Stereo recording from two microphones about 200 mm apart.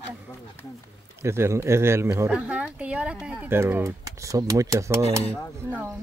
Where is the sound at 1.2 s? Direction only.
15° right (ahead or behind).